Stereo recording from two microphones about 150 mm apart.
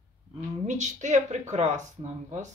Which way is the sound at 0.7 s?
50° right (ahead or behind).